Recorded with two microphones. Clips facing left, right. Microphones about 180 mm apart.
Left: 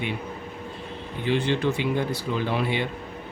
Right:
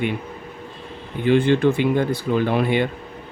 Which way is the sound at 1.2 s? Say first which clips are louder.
Right 7 dB; 55° right (ahead or behind).